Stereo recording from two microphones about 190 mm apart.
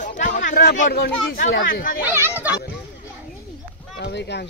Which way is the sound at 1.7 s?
50° left (ahead or behind).